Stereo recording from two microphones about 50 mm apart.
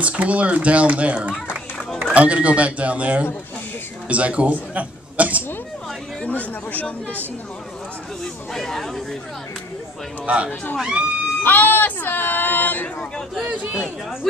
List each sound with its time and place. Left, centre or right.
0.0 s speech: right
6.2 s speech: left
8.2 s speech: centre
10.2 s speech: right
11.4 s a sound: left
13.5 s speech: right